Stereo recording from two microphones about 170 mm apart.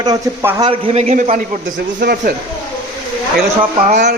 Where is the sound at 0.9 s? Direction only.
40° right (ahead or behind).